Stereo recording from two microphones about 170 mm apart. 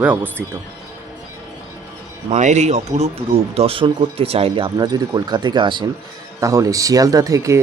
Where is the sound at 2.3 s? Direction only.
40° right (ahead or behind); by 7.6 s 20° right (ahead or behind).